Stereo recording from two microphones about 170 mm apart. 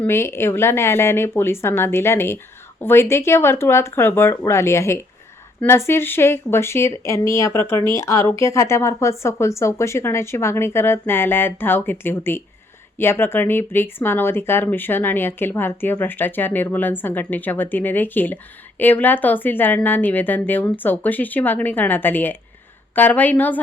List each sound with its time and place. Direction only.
0.0 s speech: 15° left (ahead or behind)